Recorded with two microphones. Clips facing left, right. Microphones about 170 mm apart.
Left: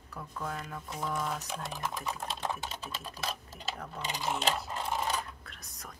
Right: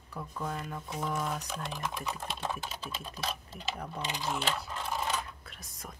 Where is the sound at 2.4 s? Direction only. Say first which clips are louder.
Even; 20° left (ahead or behind).